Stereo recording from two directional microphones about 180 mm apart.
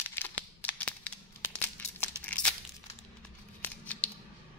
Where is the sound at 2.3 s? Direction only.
5° left (ahead or behind).